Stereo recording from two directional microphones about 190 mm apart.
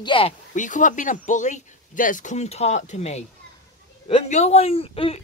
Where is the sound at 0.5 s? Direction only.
40° left (ahead or behind).